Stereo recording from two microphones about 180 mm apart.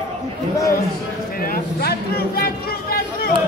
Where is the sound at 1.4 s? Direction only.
55° left (ahead or behind).